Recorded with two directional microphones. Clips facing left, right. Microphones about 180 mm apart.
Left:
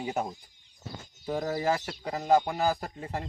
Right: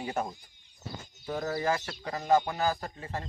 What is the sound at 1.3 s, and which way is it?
Speech, 15° left (ahead or behind).